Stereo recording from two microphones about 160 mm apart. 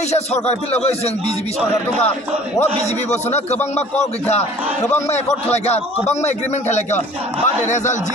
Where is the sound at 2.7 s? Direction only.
45° left (ahead or behind).